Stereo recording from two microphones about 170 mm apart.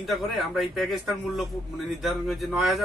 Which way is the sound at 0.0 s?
Centre (ahead or behind).